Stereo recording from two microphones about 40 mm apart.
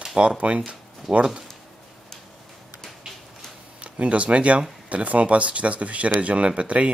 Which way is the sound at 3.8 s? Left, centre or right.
Right.